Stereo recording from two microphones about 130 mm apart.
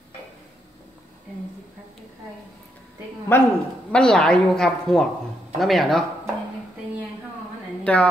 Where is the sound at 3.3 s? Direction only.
15° left (ahead or behind).